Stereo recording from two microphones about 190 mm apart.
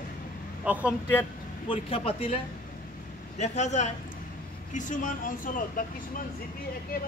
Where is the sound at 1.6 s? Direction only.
30° left (ahead or behind).